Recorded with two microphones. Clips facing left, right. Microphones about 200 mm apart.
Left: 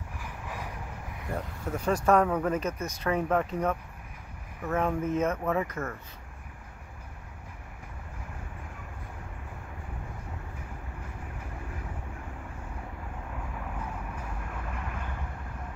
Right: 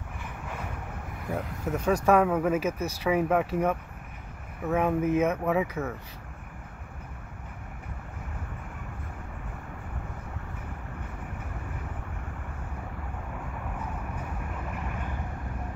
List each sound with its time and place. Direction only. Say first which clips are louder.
1.3 s speech: right 3 dB; 5° right (ahead or behind)